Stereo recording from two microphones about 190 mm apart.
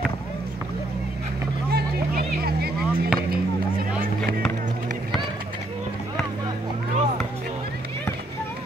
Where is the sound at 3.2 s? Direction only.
50° right (ahead or behind).